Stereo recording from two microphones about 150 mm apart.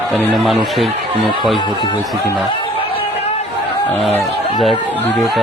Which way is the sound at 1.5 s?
30° left (ahead or behind).